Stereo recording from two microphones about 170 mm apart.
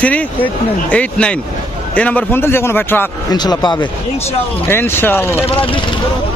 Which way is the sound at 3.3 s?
25° left (ahead or behind).